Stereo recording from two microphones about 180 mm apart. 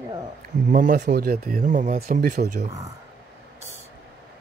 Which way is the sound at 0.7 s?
45° right (ahead or behind).